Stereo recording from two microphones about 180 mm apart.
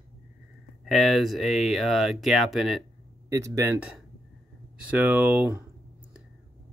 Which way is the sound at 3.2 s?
15° right (ahead or behind).